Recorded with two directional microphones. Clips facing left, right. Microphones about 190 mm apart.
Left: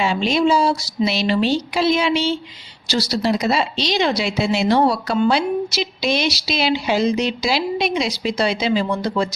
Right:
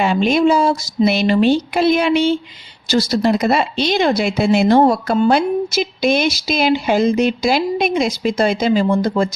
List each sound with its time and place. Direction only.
0.0 s speech: 55° right (ahead or behind)